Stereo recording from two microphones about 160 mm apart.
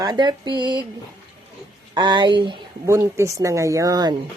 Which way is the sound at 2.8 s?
20° right (ahead or behind).